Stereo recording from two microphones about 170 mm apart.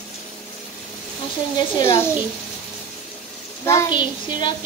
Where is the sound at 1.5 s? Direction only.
20° left (ahead or behind).